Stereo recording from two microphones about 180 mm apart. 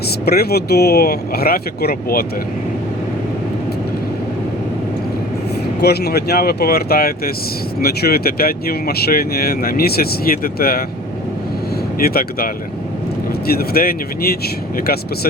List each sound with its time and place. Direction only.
0.3 s speech: 60° left (ahead or behind)
5.8 s speech: 60° left (ahead or behind)
11.9 s speech: 55° left (ahead or behind)
13.5 s speech: 55° left (ahead or behind)